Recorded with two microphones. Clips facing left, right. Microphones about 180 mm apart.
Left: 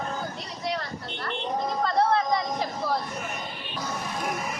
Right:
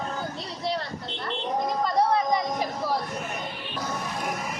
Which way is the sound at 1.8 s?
15° right (ahead or behind).